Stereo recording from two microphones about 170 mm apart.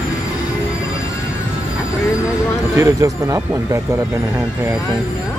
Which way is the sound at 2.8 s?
20° right (ahead or behind).